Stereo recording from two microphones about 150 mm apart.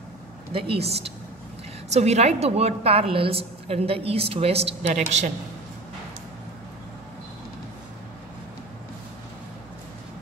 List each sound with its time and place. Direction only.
0.5 s a woman's voice: 40° right (ahead or behind)